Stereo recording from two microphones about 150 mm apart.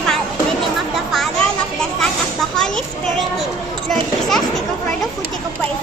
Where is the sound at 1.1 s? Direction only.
Centre (ahead or behind).